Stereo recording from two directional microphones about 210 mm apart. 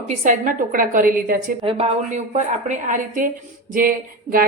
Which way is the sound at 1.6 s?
25° right (ahead or behind).